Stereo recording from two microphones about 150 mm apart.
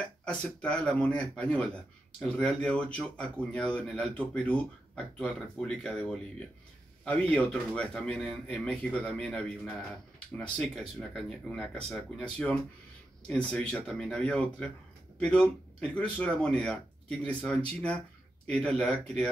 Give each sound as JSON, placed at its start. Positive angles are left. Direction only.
{"t": 0.0, "sound": "speech", "side_deg": 5}